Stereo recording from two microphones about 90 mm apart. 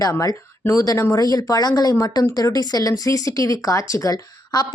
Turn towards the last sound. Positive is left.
turn(degrees=50)  # may be behind; listen again after turning